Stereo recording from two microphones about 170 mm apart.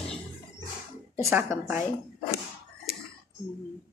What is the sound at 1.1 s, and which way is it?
Speech, 10° right (ahead or behind).